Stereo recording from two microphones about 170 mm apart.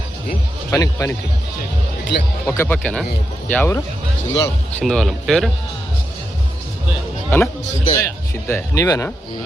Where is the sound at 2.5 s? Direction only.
15° left (ahead or behind).